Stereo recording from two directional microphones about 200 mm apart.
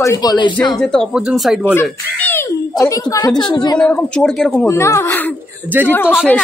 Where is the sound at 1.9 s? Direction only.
10° left (ahead or behind).